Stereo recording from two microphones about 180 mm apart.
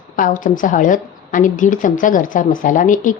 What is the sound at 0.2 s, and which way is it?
A woman's voice, 45° left (ahead or behind).